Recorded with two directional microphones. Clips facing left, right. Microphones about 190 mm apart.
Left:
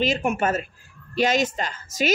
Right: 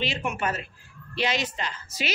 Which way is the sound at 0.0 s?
45° left (ahead or behind).